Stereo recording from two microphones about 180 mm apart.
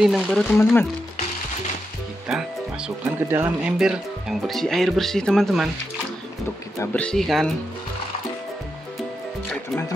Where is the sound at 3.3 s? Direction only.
15° right (ahead or behind).